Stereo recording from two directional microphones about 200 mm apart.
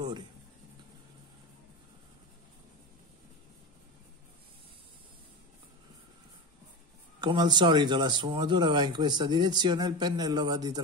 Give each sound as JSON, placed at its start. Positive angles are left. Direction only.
{"t": 7.2, "sound": "speech", "side_deg": -20}